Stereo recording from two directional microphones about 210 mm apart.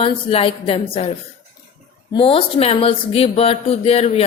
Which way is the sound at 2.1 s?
25° left (ahead or behind).